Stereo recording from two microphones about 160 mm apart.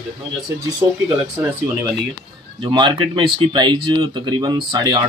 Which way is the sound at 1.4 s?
15° right (ahead or behind).